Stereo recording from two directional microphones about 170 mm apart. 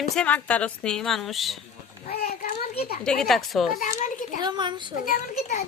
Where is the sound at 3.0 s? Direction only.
5° left (ahead or behind).